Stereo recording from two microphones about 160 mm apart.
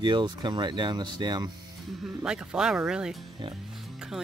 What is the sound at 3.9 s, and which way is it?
Music, 5° right (ahead or behind).